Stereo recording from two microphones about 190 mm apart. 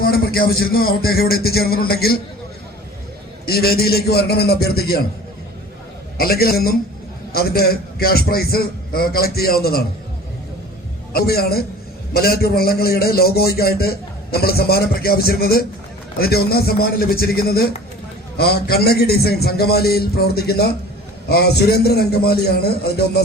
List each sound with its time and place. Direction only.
0.0 s a man's voice: 50° left (ahead or behind)
3.4 s a man's voice: 55° left (ahead or behind)
6.1 s a man's voice: 55° left (ahead or behind)
11.1 s a man's voice: 55° left (ahead or behind)